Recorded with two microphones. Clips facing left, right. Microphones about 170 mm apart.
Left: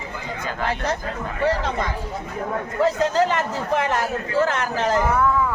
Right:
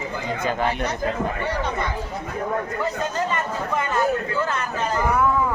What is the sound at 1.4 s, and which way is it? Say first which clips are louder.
Speech: left 4 dB; 90° left.